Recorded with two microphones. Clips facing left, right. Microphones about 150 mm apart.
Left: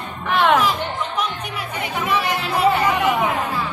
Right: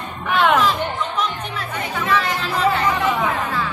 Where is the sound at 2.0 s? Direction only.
15° left (ahead or behind).